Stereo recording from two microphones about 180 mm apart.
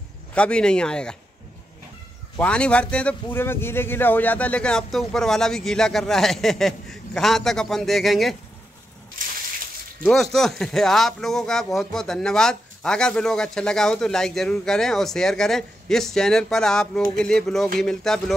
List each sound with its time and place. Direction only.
0.3 s speech: 5° left (ahead or behind)
2.3 s speech: 5° left (ahead or behind)
9.2 s a sound: 50° right (ahead or behind)
10.0 s speech: centre (ahead or behind)